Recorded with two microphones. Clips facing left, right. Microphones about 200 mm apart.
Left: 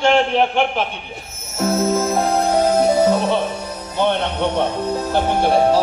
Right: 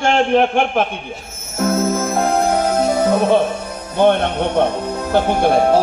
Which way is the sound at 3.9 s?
50° right (ahead or behind).